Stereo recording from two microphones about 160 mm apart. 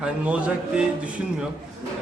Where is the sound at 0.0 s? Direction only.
5° right (ahead or behind).